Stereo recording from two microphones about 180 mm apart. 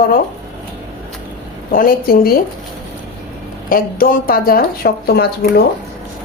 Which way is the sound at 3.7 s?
50° left (ahead or behind).